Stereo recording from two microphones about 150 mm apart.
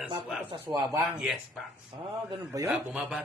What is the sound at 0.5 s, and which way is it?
Speech, 35° right (ahead or behind).